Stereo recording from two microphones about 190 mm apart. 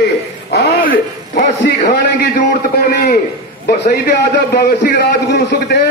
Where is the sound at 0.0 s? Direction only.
55° left (ahead or behind).